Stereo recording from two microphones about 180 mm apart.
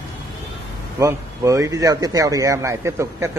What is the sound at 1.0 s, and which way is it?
A man's voice, 15° right (ahead or behind).